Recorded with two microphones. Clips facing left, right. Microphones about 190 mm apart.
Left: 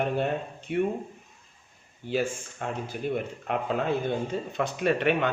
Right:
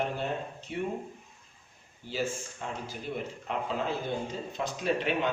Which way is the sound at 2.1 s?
55° left (ahead or behind).